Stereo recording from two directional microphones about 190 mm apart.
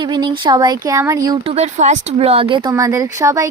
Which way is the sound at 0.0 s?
25° right (ahead or behind).